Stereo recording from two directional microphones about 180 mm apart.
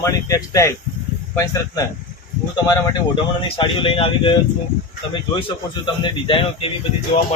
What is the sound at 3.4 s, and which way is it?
Speech, 30° left (ahead or behind).